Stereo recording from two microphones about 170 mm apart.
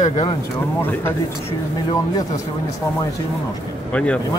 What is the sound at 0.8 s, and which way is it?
Speech, 10° left (ahead or behind).